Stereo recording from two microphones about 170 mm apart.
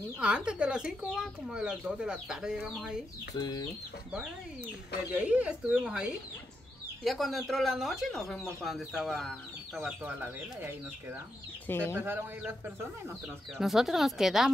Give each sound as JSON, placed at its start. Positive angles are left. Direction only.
{"t": 0.2, "sound": "speech", "side_deg": -5}
{"t": 3.3, "sound": "speech", "side_deg": 25}
{"t": 5.1, "sound": "speech", "side_deg": -5}
{"t": 11.6, "sound": "speech", "side_deg": 10}
{"t": 11.9, "sound": "speech", "side_deg": -10}